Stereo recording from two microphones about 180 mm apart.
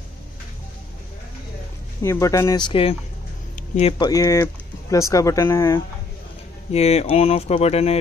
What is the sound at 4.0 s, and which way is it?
Speech, 20° left (ahead or behind).